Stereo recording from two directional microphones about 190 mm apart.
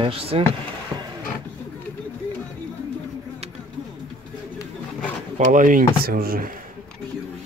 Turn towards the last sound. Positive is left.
turn(degrees=-50)  # may be behind; listen again after turning